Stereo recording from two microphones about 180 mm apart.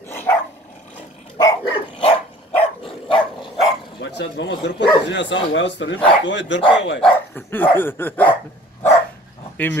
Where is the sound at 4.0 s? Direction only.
65° left (ahead or behind); by 7.0 s 90° left.